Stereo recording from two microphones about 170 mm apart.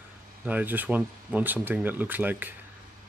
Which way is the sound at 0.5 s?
10° right (ahead or behind).